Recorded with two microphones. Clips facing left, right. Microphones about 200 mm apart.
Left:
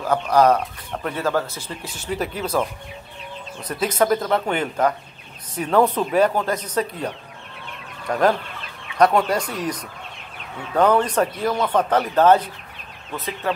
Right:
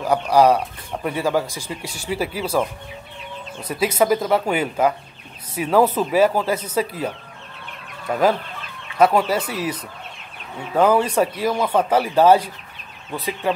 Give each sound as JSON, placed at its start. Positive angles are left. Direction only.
{"t": 0.0, "sound": "speech", "side_deg": -10}
{"t": 3.6, "sound": "speech", "side_deg": -10}